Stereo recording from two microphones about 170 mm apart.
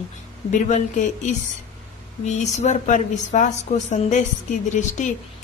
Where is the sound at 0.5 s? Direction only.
45° left (ahead or behind).